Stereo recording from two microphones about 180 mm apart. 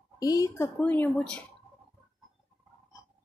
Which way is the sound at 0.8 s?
5° left (ahead or behind).